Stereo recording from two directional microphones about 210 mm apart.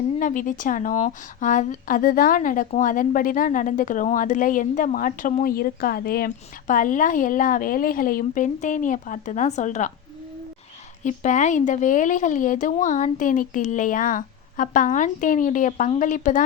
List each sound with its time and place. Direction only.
0.2 s a woman's voice: 40° left (ahead or behind)
11.0 s a woman's voice: 35° left (ahead or behind)